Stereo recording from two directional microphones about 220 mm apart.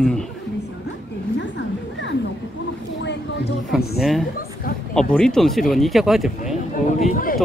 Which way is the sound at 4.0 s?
Centre (ahead or behind).